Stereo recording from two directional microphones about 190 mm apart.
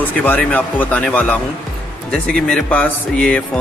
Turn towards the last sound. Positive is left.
turn(degrees=5)  # may be behind; listen again after turning